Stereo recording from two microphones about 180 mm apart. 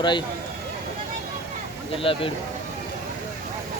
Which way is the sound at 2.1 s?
30° left (ahead or behind).